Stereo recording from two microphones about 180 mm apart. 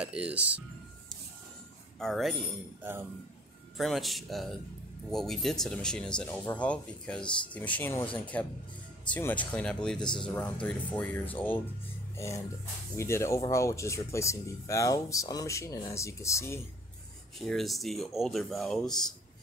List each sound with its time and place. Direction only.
0.0 s speech: 5° right (ahead or behind)
2.0 s speech: centre (ahead or behind)
12.9 s speech: 15° left (ahead or behind)
17.5 s speech: centre (ahead or behind)